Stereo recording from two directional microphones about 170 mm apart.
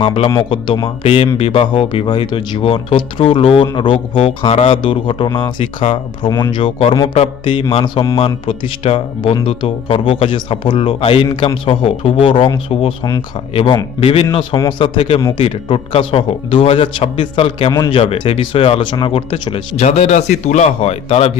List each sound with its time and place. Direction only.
0.0 s speech: 30° left (ahead or behind)